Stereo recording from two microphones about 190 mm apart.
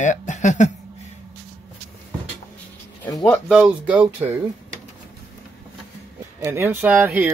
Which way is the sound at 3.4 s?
5° right (ahead or behind).